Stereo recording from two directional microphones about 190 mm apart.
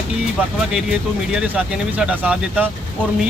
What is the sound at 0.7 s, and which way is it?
Speech, 5° right (ahead or behind).